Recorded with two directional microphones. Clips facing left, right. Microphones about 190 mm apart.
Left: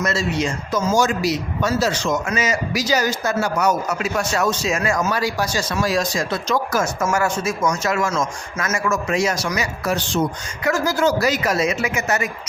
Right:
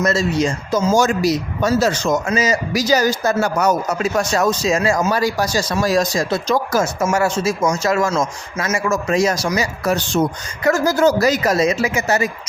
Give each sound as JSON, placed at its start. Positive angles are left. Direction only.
{"t": 0.0, "sound": "a man's voice", "side_deg": -40}
{"t": 0.9, "sound": "a man's voice", "side_deg": -45}
{"t": 6.8, "sound": "a man's voice", "side_deg": -25}
{"t": 10.6, "sound": "a man's voice", "side_deg": -40}